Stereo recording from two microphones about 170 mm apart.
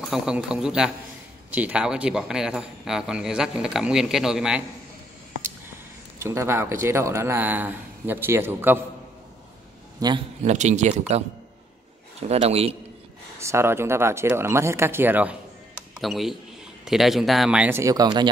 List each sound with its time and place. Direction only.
0.1 s a man's voice: 5° right (ahead or behind)
6.2 s speech: 15° right (ahead or behind)
9.9 s speech: 25° right (ahead or behind)
10.4 s a man's voice: 45° right (ahead or behind)
13.4 s a man's voice: 15° right (ahead or behind)